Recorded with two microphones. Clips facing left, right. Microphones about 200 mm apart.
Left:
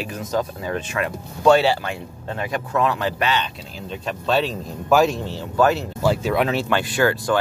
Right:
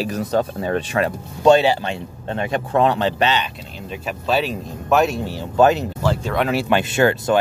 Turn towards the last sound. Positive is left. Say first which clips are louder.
# right 3 dB
turn(degrees=-20)  # may be behind; listen again after turning